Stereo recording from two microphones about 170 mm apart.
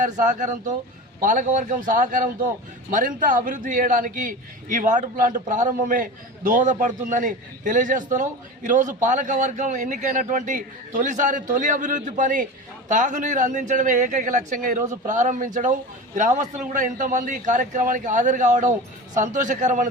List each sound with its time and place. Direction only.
0.0 s a man's voice: 50° right (ahead or behind)